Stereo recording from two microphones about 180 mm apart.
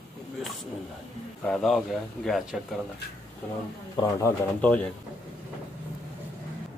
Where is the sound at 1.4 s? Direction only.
5° left (ahead or behind).